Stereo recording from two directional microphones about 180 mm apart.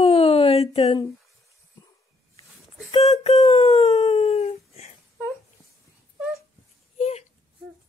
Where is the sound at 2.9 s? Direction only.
35° left (ahead or behind).